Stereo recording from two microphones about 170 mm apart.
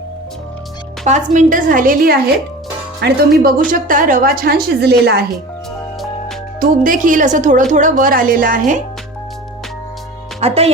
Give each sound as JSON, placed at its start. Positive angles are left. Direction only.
{"t": 1.0, "sound": "a woman's voice", "side_deg": -45}
{"t": 3.0, "sound": "speech", "side_deg": -75}
{"t": 3.4, "sound": "a woman's voice", "side_deg": -55}
{"t": 6.6, "sound": "a woman's voice", "side_deg": -50}
{"t": 10.4, "sound": "speech", "side_deg": -35}